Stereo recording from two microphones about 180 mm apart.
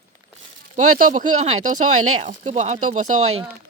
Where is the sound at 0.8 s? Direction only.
45° right (ahead or behind).